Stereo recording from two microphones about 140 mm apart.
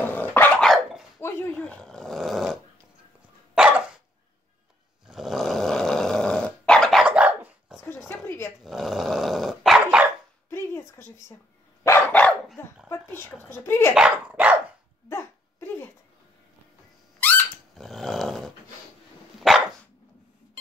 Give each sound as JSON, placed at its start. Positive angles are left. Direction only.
{"t": 0.0, "sound": "dog", "side_deg": 15}
{"t": 1.2, "sound": "a sound", "side_deg": 15}
{"t": 1.6, "sound": "roar", "side_deg": 5}
{"t": 3.5, "sound": "dog", "side_deg": -5}
{"t": 5.0, "sound": "dog", "side_deg": 0}
{"t": 8.1, "sound": "a sound", "side_deg": 20}
{"t": 8.6, "sound": "dog", "side_deg": 0}
{"t": 10.5, "sound": "a sound", "side_deg": 20}
{"t": 11.8, "sound": "dog", "side_deg": 15}
{"t": 12.9, "sound": "a sound", "side_deg": 15}
{"t": 13.9, "sound": "dog", "side_deg": -10}
{"t": 15.0, "sound": "hiccup", "side_deg": 15}
{"t": 17.2, "sound": "squeak", "side_deg": 10}
{"t": 17.8, "sound": "dog", "side_deg": 0}